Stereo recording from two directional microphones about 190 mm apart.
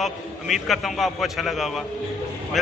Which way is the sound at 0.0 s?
Centre (ahead or behind).